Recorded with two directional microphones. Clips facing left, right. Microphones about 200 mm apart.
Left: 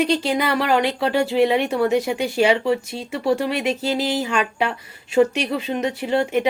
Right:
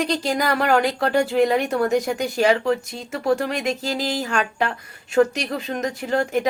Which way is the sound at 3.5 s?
40° right (ahead or behind).